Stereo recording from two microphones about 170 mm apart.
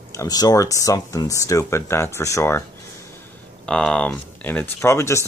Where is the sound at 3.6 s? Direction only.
5° left (ahead or behind).